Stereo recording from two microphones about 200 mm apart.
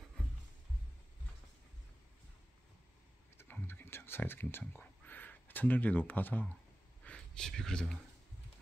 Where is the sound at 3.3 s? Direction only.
10° left (ahead or behind).